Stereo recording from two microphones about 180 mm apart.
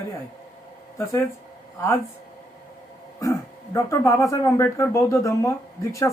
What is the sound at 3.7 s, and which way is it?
Speech, 15° left (ahead or behind).